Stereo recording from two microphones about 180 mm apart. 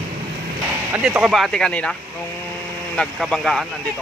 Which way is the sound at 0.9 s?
5° right (ahead or behind).